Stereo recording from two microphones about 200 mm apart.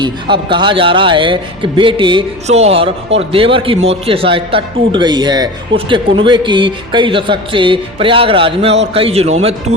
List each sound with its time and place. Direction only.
0.0 s a man's voice: 25° right (ahead or behind)